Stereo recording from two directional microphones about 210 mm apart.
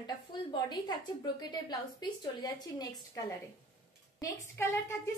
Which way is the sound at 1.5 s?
20° left (ahead or behind).